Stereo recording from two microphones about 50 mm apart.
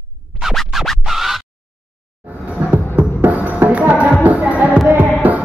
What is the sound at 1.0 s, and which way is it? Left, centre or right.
Music, centre.